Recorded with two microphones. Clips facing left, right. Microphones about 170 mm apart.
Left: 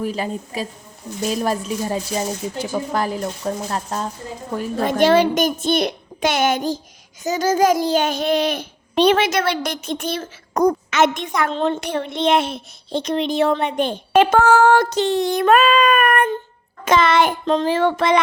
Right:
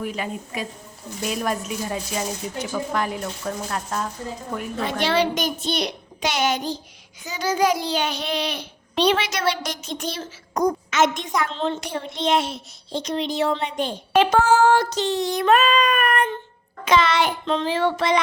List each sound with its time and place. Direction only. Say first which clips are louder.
0.0 s speech: left 4 dB; 35° left (ahead or behind)
4.9 s a child's voice: left 7 dB; 45° left (ahead or behind)